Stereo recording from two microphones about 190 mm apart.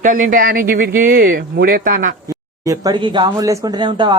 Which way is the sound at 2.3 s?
20° right (ahead or behind).